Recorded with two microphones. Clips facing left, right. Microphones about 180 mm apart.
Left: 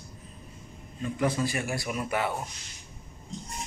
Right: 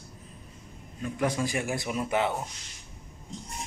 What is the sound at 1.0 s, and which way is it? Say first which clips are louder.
A man's voice: left 1 dB; 15° right (ahead or behind).